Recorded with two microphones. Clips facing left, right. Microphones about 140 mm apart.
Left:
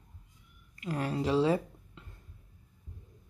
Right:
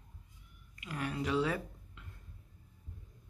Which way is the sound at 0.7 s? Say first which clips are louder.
Left 5 dB; 35° left (ahead or behind).